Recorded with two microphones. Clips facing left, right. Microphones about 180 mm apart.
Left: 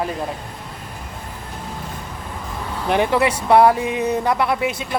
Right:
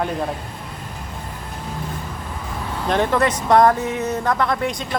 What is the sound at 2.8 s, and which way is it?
Speech, 10° left (ahead or behind).